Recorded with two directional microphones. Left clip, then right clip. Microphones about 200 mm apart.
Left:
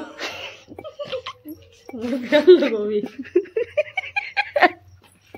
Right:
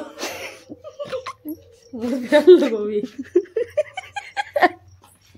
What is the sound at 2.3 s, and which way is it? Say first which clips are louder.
Speech: right 1 dB; 45° right (ahead or behind).